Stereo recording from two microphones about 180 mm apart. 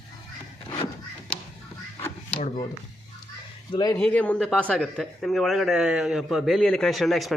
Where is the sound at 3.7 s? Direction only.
25° left (ahead or behind).